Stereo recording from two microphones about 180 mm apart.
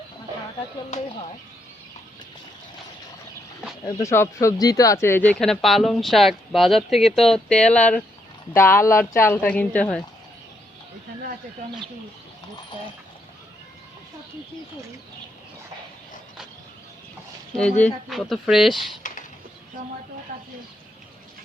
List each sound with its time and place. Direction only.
3.8 s a woman's voice: 15° left (ahead or behind)
17.6 s speech: 5° left (ahead or behind)
19.0 s a sound: 45° left (ahead or behind)